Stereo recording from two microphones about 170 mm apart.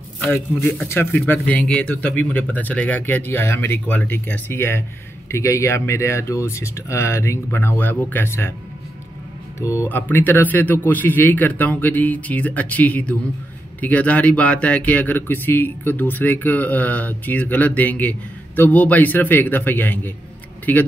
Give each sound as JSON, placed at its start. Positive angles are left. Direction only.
{"t": 0.2, "sound": "speech", "side_deg": 10}
{"t": 9.6, "sound": "speech", "side_deg": 15}